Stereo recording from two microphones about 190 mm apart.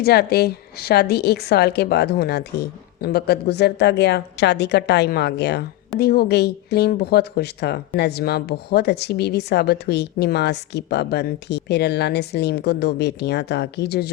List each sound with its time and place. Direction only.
0.0 s speech: 55° left (ahead or behind)